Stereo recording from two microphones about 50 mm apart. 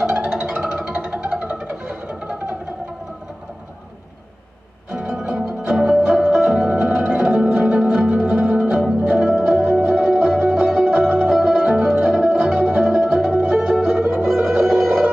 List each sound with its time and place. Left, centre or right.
0.3 s music: centre
4.9 s music: centre